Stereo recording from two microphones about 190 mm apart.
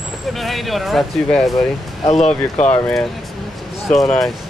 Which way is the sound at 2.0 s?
35° left (ahead or behind).